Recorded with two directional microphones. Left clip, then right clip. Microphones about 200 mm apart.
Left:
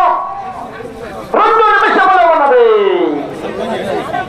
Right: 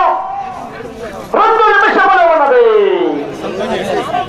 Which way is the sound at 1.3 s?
20° right (ahead or behind).